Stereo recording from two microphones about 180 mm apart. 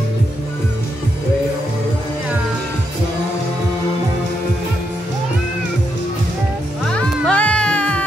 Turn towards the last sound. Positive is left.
turn(degrees=5)  # may be behind; listen again after turning